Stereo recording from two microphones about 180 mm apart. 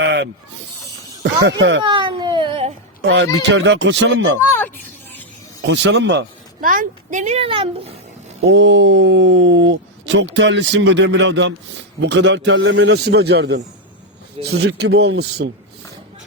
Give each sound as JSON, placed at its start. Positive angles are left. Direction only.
{"t": 0.0, "sound": "snake", "side_deg": -70}
{"t": 1.2, "sound": "speech", "side_deg": -80}
{"t": 1.8, "sound": "baby cry", "side_deg": -30}
{"t": 3.0, "sound": "speech", "side_deg": -75}
{"t": 3.4, "sound": "speech", "side_deg": -85}
{"t": 5.6, "sound": "speech", "side_deg": -90}
{"t": 6.6, "sound": "speech", "side_deg": -50}
{"t": 8.5, "sound": "a man's voice", "side_deg": -90}